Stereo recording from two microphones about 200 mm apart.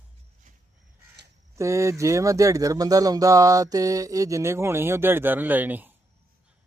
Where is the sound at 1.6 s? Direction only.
15° right (ahead or behind).